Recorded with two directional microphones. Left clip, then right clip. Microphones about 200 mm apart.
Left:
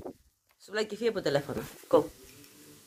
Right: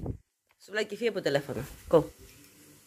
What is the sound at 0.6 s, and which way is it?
Speech, 5° right (ahead or behind).